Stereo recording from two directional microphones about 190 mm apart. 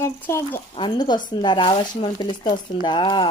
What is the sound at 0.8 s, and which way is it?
Speech, 25° left (ahead or behind).